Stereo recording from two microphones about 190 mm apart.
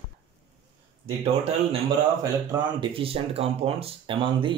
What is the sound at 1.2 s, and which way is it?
Speech, 30° right (ahead or behind).